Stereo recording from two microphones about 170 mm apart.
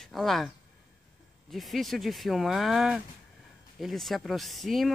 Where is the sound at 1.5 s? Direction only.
Centre (ahead or behind).